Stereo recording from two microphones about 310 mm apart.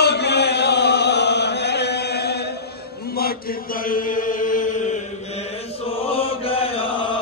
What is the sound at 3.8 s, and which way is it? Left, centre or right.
Chant, left.